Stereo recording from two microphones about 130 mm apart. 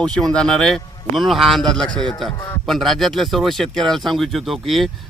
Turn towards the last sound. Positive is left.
turn(degrees=0)  # may be behind; listen again after turning